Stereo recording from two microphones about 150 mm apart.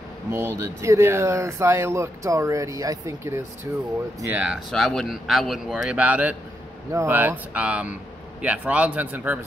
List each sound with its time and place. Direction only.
0.3 s speech: 15° right (ahead or behind)
4.6 s a man's voice: 5° left (ahead or behind)